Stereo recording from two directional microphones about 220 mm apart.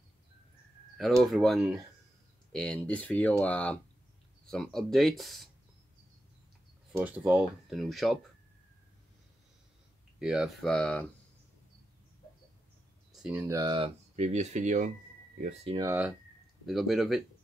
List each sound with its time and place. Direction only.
1.2 s speech: centre (ahead or behind)
7.0 s speech: 5° right (ahead or behind)
10.1 s speech: centre (ahead or behind)
13.1 s speech: 5° right (ahead or behind); by 15.8 s 30° right (ahead or behind)
15.8 s speech: 10° right (ahead or behind)
16.6 s speech: centre (ahead or behind)